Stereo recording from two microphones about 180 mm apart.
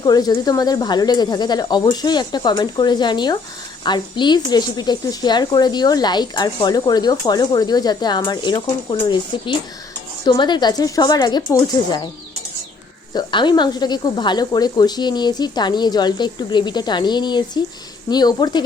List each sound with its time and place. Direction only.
0.0 s speech: 20° left (ahead or behind)
13.1 s speech: 25° left (ahead or behind)